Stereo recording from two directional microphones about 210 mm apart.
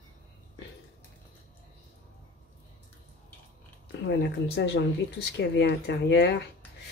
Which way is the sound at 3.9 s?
55° left (ahead or behind).